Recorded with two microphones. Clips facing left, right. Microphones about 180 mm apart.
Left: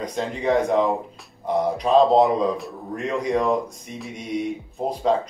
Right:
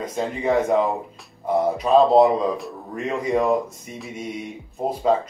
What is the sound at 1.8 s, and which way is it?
A man's voice, centre (ahead or behind).